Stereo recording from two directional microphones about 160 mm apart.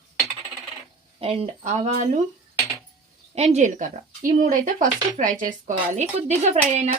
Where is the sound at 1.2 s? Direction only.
35° right (ahead or behind).